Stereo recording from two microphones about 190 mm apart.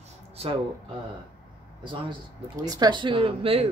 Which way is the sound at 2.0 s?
20° right (ahead or behind).